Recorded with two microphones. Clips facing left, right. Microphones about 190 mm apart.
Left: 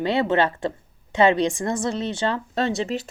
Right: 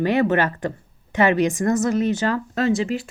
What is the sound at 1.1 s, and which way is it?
A woman's voice, 25° left (ahead or behind).